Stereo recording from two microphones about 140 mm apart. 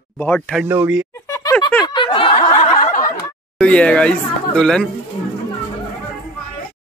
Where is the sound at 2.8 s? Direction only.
65° left (ahead or behind).